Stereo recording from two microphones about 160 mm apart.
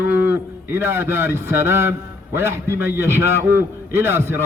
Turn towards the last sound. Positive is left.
turn(degrees=-15)  # may be behind; listen again after turning